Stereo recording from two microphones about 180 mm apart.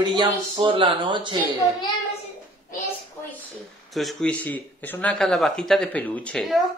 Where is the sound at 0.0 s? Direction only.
25° right (ahead or behind).